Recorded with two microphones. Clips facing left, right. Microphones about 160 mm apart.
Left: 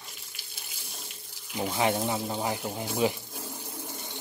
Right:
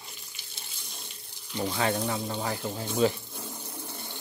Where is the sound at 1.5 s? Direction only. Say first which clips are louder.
Left 1 dB; 10° left (ahead or behind).